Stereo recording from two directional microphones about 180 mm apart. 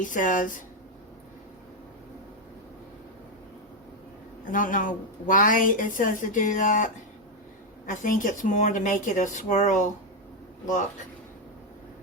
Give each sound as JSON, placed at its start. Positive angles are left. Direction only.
{"t": 0.0, "sound": "a woman's voice", "side_deg": 45}
{"t": 4.5, "sound": "a woman's voice", "side_deg": 50}